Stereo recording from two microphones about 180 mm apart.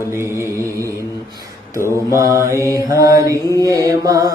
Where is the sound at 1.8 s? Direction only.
15° left (ahead or behind).